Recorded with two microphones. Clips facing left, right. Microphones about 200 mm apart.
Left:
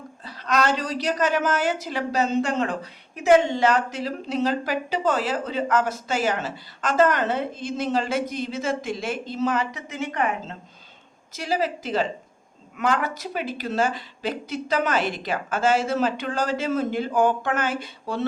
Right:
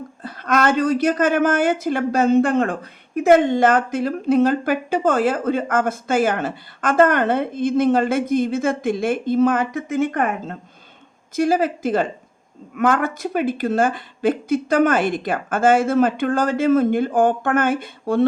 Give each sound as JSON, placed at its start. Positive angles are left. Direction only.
{"t": 0.2, "sound": "a woman's voice", "side_deg": -55}